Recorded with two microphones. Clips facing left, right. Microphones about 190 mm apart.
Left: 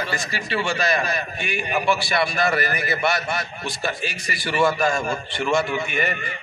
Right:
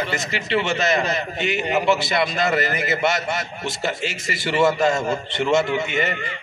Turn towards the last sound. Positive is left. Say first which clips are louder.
# right 2 dB
turn(degrees=-25)  # may be behind; listen again after turning